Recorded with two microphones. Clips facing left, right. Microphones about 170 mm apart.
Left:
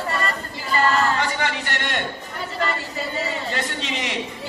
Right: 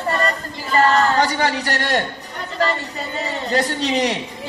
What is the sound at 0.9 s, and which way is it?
Speech, 40° right (ahead or behind).